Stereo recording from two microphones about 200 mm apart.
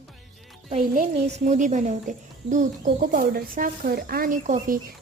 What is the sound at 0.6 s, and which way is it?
A woman's voice, 40° right (ahead or behind).